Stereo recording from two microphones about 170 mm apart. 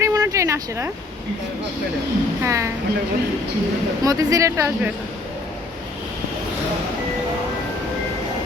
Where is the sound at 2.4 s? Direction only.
15° right (ahead or behind).